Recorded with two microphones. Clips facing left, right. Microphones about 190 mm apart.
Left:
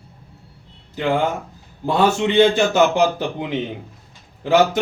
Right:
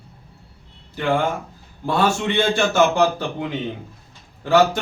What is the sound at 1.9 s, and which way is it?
A man's voice, 20° left (ahead or behind).